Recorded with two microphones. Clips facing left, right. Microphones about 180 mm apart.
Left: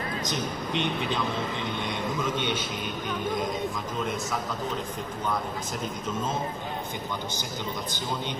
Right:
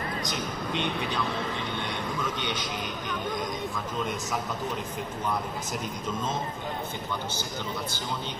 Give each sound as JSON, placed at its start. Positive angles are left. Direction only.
{"t": 0.7, "sound": "a man's voice", "side_deg": 20}